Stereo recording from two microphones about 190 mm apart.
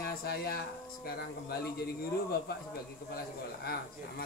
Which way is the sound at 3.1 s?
55° left (ahead or behind).